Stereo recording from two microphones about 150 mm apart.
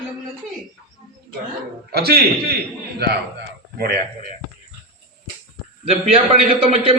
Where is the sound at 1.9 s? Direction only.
90° right.